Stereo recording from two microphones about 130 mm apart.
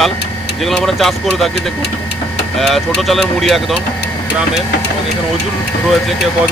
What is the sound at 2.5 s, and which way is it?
Speech, 5° left (ahead or behind).